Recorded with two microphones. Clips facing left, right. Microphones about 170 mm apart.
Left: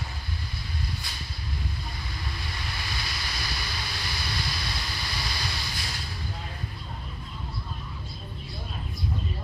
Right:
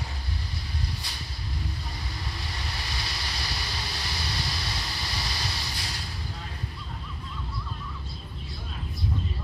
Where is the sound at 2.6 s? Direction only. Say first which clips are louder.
Even; 35° right (ahead or behind).